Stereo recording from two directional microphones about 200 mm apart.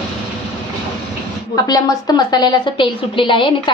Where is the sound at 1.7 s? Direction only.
20° left (ahead or behind).